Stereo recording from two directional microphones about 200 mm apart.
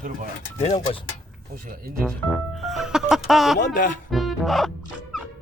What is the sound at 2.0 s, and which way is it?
Speech, centre (ahead or behind).